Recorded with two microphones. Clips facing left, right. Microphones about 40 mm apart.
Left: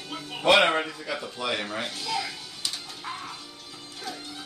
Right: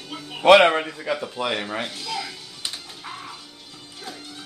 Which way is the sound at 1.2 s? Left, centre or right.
Centre.